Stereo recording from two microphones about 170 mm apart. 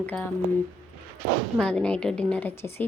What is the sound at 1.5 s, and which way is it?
A woman's voice, 5° left (ahead or behind).